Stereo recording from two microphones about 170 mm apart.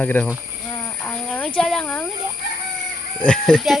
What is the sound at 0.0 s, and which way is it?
Speech, 10° left (ahead or behind).